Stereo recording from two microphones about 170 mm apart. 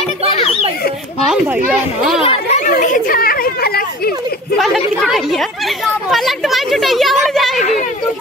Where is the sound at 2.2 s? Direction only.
35° left (ahead or behind); by 3.8 s 65° left (ahead or behind).